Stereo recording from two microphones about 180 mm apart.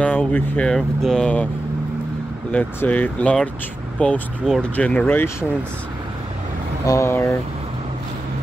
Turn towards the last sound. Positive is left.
turn(degrees=15)  # may be behind; listen again after turning